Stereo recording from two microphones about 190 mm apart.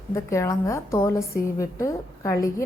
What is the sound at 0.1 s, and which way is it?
A woman's voice, 15° left (ahead or behind).